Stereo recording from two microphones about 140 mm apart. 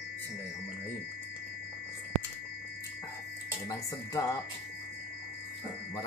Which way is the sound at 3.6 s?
25° left (ahead or behind).